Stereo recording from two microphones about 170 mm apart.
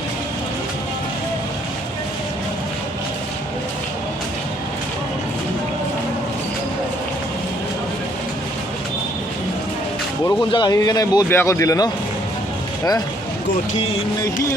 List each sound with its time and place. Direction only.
10.2 s a man's voice: 25° left (ahead or behind)